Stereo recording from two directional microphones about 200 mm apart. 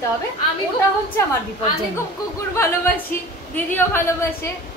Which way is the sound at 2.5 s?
10° left (ahead or behind).